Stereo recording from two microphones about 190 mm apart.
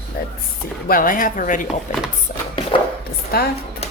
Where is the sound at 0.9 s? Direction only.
45° left (ahead or behind).